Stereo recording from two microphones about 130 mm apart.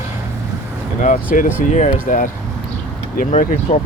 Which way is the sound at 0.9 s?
75° left (ahead or behind).